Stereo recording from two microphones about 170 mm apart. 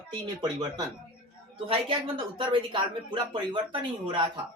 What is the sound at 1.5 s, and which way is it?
A woman's voice, 30° right (ahead or behind).